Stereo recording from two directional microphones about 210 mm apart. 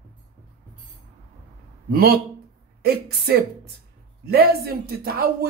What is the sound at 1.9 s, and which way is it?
A woman's voice, 45° right (ahead or behind).